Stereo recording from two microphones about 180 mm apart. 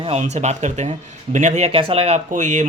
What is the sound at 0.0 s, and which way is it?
Speech, 35° right (ahead or behind).